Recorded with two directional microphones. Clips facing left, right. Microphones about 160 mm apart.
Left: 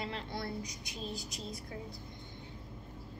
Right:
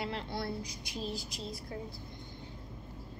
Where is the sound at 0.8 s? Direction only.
20° left (ahead or behind).